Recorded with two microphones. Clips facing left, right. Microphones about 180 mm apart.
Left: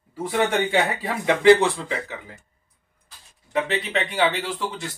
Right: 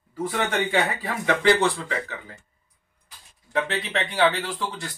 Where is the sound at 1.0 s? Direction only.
20° left (ahead or behind).